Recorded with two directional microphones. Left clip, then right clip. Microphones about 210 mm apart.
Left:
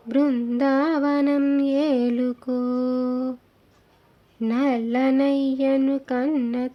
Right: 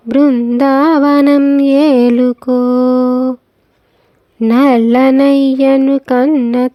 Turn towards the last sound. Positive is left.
turn(degrees=-50)  # may be behind; listen again after turning